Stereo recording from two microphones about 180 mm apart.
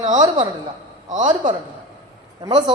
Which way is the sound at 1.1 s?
45° right (ahead or behind).